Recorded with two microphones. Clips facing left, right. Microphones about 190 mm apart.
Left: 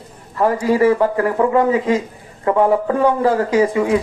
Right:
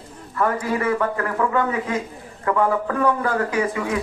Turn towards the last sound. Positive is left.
turn(degrees=25)  # may be behind; listen again after turning